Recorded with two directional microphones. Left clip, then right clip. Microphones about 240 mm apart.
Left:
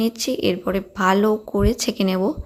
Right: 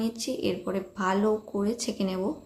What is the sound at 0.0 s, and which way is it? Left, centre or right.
Speech, left.